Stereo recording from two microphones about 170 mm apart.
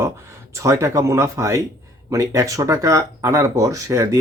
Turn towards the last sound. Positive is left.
turn(degrees=-20)  # may be behind; listen again after turning